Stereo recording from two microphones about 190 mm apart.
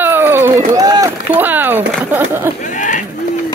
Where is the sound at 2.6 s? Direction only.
40° left (ahead or behind).